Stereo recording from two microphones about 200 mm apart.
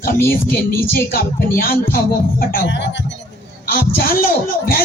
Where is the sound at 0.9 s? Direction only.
45° left (ahead or behind).